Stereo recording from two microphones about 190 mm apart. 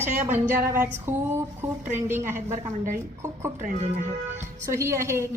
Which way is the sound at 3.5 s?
40° right (ahead or behind).